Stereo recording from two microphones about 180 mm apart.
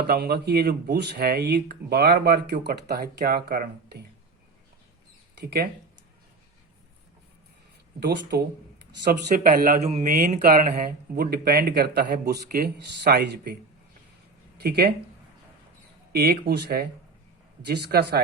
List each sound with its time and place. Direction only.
0.1 s speech: 65° right (ahead or behind)
5.3 s speech: 65° right (ahead or behind)
7.9 s speech: 60° right (ahead or behind)
9.0 s speech: 50° right (ahead or behind)
9.8 s speech: 40° right (ahead or behind)
10.2 s speech: 50° right (ahead or behind); by 13.6 s 70° right (ahead or behind)
14.6 s speech: 60° right (ahead or behind)
16.1 s a man's voice: 60° right (ahead or behind)